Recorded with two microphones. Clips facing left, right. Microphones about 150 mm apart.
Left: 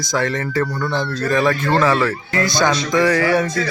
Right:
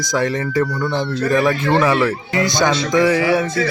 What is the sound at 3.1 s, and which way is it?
Speech, 5° right (ahead or behind).